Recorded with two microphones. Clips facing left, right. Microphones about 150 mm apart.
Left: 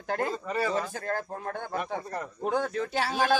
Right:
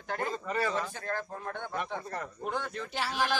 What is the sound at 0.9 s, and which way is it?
Speech, 40° left (ahead or behind).